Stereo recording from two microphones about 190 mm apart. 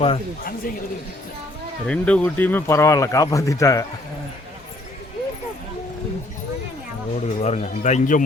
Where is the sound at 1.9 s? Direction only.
5° left (ahead or behind).